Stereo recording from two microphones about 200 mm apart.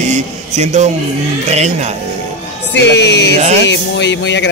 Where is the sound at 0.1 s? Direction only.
35° right (ahead or behind).